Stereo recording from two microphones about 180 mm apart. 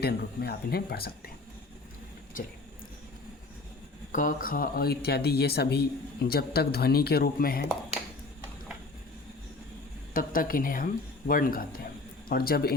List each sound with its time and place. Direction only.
0.0 s speech: 60° left (ahead or behind)
4.1 s speech: 50° left (ahead or behind)
10.2 s speech: 50° left (ahead or behind)